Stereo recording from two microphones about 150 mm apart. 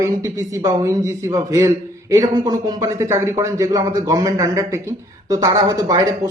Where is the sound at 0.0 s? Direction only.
20° right (ahead or behind).